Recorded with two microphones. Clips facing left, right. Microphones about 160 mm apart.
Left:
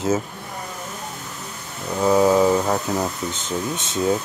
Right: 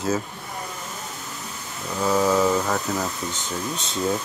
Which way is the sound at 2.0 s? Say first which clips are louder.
Left 4 dB; 20° left (ahead or behind).